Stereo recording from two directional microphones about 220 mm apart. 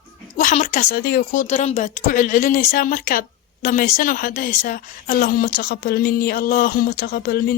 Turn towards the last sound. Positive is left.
turn(degrees=45)  # may be behind; listen again after turning